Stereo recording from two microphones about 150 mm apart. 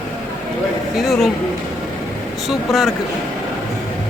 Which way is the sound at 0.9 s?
Centre (ahead or behind).